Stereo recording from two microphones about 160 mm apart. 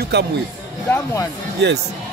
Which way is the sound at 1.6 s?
90° right.